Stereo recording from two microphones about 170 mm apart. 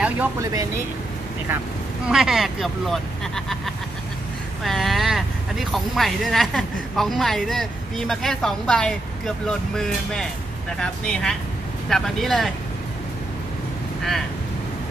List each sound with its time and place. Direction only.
0.0 s speech: 15° right (ahead or behind)
2.0 s speech: centre (ahead or behind)